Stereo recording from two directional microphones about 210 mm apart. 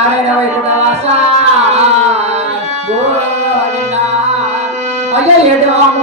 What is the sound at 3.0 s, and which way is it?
Music, 30° right (ahead or behind).